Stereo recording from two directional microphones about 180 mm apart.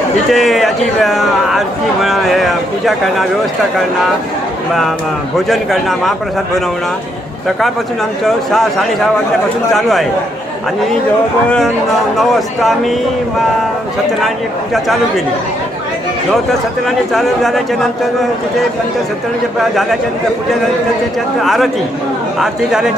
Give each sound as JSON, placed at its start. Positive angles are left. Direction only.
{"t": 0.3, "sound": "a man's voice", "side_deg": 0}
{"t": 5.5, "sound": "a man's voice", "side_deg": 0}
{"t": 8.5, "sound": "a man's voice", "side_deg": 0}
{"t": 12.2, "sound": "a man's voice", "side_deg": 0}
{"t": 14.2, "sound": "a man's voice", "side_deg": 0}
{"t": 17.1, "sound": "a man's voice", "side_deg": 0}
{"t": 19.7, "sound": "a man's voice", "side_deg": 0}
{"t": 21.4, "sound": "a man's voice", "side_deg": 0}